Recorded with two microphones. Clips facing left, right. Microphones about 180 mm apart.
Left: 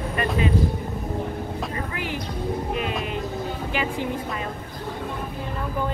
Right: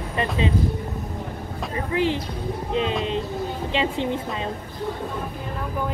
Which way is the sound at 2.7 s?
25° right (ahead or behind).